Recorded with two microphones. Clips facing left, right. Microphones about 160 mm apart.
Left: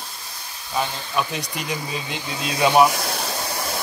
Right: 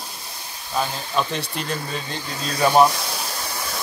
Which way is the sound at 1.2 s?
10° left (ahead or behind).